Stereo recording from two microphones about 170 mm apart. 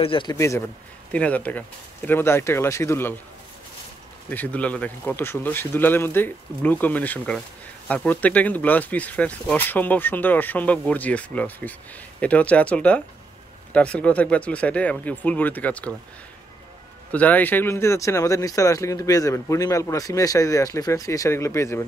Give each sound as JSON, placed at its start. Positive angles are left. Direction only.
{"t": 0.0, "sound": "speech", "side_deg": 30}
{"t": 0.4, "sound": "speech", "side_deg": 15}
{"t": 4.3, "sound": "speech", "side_deg": 10}
{"t": 17.1, "sound": "speech", "side_deg": 10}